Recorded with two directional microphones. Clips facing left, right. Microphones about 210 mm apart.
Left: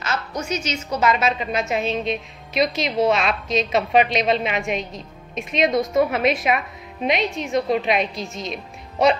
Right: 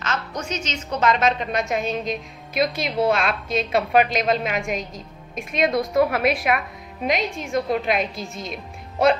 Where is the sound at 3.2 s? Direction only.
55° right (ahead or behind).